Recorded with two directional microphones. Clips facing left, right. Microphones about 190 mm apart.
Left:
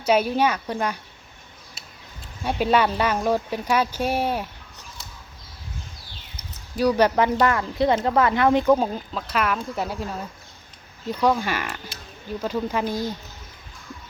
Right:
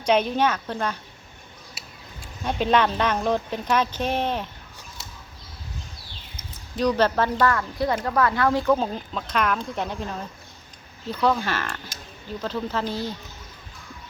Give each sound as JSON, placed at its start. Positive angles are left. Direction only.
{"t": 0.0, "sound": "speech", "side_deg": 10}
{"t": 2.4, "sound": "speech", "side_deg": 10}
{"t": 6.7, "sound": "speech", "side_deg": 10}
{"t": 8.8, "sound": "speech", "side_deg": 5}